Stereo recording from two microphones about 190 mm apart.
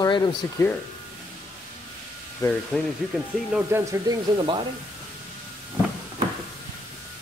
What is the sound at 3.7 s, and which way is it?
Speech, 15° right (ahead or behind).